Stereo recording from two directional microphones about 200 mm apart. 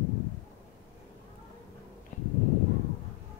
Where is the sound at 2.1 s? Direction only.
40° left (ahead or behind).